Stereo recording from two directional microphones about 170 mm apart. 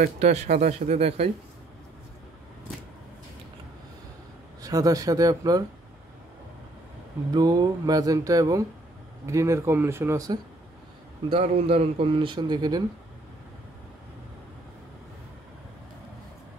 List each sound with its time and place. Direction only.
0.2 s speech: 40° right (ahead or behind)
4.6 s a man's voice: 20° right (ahead or behind)
7.3 s a man's voice: 20° right (ahead or behind)
11.2 s a man's voice: 35° right (ahead or behind)